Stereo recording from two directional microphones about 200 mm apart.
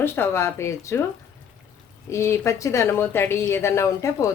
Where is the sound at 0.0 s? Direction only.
10° left (ahead or behind).